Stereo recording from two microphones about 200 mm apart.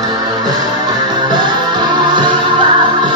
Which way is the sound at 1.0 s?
20° right (ahead or behind).